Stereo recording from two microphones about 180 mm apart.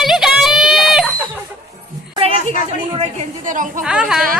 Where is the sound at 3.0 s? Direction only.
40° right (ahead or behind).